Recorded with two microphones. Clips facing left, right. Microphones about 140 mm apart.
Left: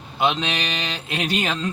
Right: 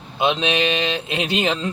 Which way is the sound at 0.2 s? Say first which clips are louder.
Right 3 dB; 20° right (ahead or behind).